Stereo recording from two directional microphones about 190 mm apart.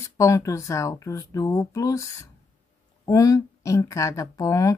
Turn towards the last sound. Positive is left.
turn(degrees=15)  # may be behind; listen again after turning